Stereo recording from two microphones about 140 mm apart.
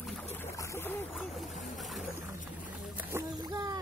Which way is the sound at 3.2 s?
25° right (ahead or behind).